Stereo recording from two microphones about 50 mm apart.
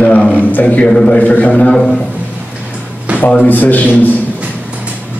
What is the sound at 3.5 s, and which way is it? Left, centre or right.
Speech, left.